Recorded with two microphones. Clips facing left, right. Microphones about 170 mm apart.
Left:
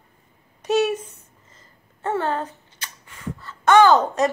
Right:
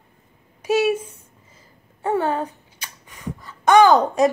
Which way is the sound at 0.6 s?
5° right (ahead or behind).